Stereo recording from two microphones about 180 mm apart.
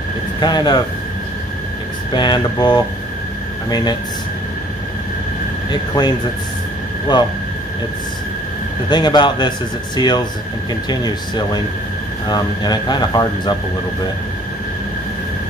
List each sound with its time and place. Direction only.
0.4 s speech: 25° left (ahead or behind)
2.1 s speech: 25° left (ahead or behind)
5.7 s speech: 25° left (ahead or behind)
8.8 s speech: 25° left (ahead or behind)